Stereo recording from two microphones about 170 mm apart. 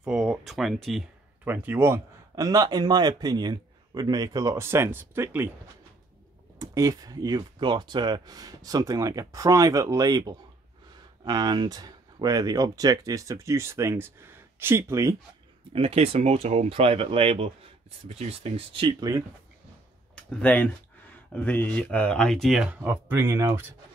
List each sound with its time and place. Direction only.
0.0 s speech: 5° right (ahead or behind)
1.4 s speech: 10° right (ahead or behind)
6.6 s speech: 20° right (ahead or behind)
15.7 s speech: 35° right (ahead or behind)
20.2 s speech: 10° left (ahead or behind); by 23.6 s 15° right (ahead or behind)